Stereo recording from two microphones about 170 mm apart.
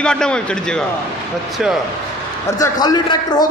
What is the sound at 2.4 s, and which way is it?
A man's voice, 20° left (ahead or behind).